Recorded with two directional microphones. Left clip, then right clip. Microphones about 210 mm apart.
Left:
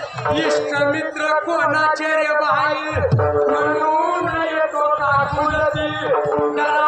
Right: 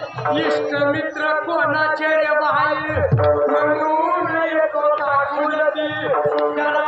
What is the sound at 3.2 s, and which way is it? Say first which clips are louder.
Music: right 1 dB; 45° left (ahead or behind).